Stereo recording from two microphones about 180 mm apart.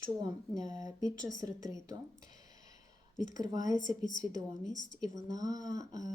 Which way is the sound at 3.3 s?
20° right (ahead or behind).